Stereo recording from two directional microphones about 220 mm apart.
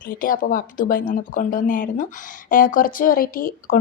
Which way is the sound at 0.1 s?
40° left (ahead or behind).